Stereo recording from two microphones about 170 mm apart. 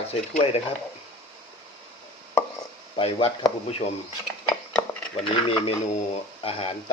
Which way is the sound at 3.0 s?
30° left (ahead or behind).